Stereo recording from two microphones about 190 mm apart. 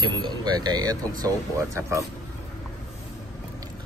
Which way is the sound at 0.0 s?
25° right (ahead or behind).